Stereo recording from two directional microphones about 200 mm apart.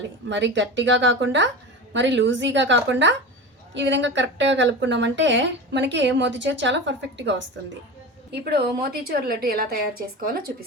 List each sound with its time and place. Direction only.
0.0 s a woman's voice: 65° right (ahead or behind); by 10.5 s 45° right (ahead or behind)